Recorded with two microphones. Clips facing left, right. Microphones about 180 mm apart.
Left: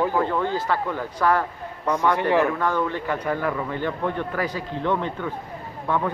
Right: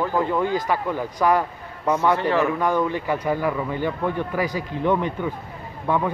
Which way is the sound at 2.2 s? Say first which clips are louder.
Left 1 dB; 15° left (ahead or behind).